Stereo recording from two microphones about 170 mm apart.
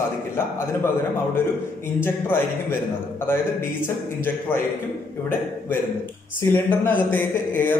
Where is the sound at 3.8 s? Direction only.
15° left (ahead or behind).